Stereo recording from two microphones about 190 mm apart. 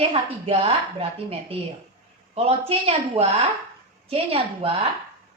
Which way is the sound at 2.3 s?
35° right (ahead or behind).